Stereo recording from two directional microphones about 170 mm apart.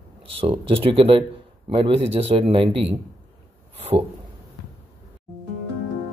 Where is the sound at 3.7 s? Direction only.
35° right (ahead or behind).